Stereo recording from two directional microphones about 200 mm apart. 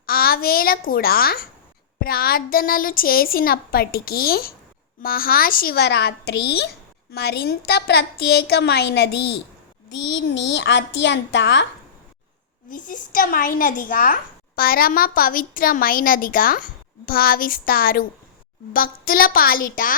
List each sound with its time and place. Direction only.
0.0 s a sound: 50° left (ahead or behind)
2.0 s a woman's voice: 50° left (ahead or behind)
12.7 s speech: 45° left (ahead or behind)